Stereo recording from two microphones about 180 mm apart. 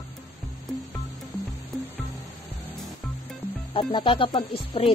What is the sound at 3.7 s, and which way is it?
Speech, 25° left (ahead or behind).